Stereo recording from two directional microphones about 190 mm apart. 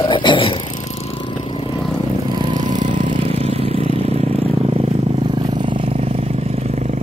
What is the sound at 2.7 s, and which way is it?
Vehicle, 40° right (ahead or behind).